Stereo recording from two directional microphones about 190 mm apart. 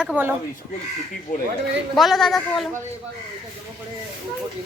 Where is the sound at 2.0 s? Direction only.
Centre (ahead or behind).